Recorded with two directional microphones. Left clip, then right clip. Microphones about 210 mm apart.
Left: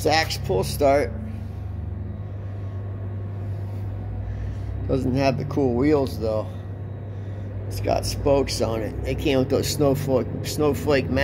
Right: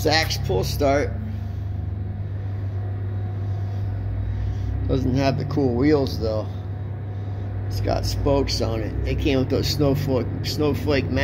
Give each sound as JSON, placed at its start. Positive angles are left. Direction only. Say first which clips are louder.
{"t": 0.0, "sound": "speech", "louder": "even", "side_deg": 10}
{"t": 4.8, "sound": "speech", "louder": "left 1 dB", "side_deg": 15}
{"t": 7.8, "sound": "speech", "louder": "left 2 dB", "side_deg": 15}